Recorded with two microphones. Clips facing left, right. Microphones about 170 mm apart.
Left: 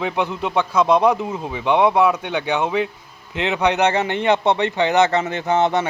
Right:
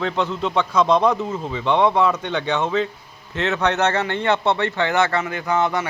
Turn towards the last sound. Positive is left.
turn(degrees=25)  # may be behind; listen again after turning